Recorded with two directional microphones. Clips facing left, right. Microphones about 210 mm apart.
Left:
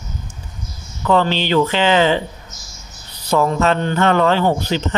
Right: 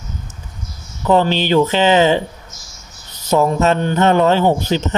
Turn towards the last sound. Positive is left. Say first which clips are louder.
# right 2 dB
turn(degrees=-15)  # may be behind; listen again after turning